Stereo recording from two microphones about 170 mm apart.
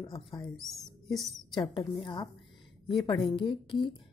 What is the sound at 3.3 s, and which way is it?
Speech, 30° left (ahead or behind).